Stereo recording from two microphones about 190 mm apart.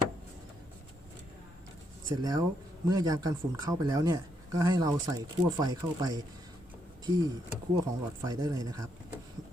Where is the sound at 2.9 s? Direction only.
20° right (ahead or behind).